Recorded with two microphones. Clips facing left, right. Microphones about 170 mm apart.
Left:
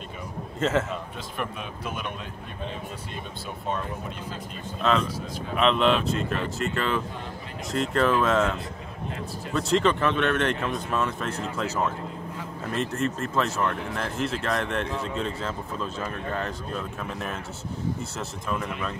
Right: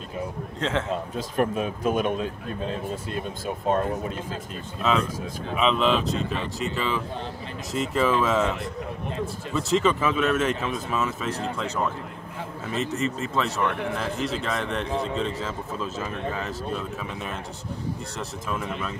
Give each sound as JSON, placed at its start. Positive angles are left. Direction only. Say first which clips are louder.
{"t": 0.6, "sound": "speech", "louder": "left 3 dB", "side_deg": 5}
{"t": 1.1, "sound": "speech", "louder": "right 9 dB", "side_deg": -40}
{"t": 4.8, "sound": "speech", "louder": "even", "side_deg": -5}
{"t": 18.5, "sound": "speech", "louder": "left 1 dB", "side_deg": 0}